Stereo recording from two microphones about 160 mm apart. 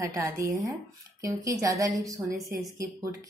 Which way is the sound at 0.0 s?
20° right (ahead or behind).